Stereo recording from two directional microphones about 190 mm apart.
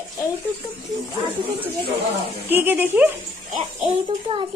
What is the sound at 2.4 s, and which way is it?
Speech, 10° right (ahead or behind).